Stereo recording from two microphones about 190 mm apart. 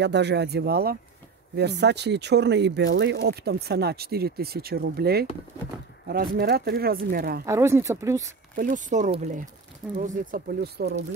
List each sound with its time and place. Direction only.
0.0 s speech: 65° right (ahead or behind)
7.4 s speech: 15° right (ahead or behind)
8.5 s speech: 40° right (ahead or behind); by 11.0 s 55° right (ahead or behind)